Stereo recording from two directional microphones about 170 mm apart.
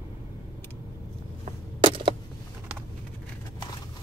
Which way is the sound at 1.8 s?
30° right (ahead or behind).